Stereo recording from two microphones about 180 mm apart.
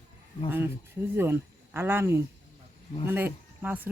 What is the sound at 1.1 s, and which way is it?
Speech, 10° right (ahead or behind).